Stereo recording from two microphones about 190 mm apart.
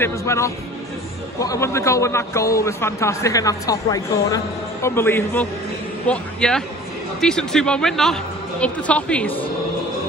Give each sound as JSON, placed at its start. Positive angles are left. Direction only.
{"t": 0.0, "sound": "a man's voice", "side_deg": 15}